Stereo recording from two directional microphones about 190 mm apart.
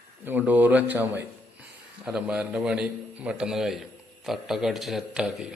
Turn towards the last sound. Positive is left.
turn(degrees=-5)  # may be behind; listen again after turning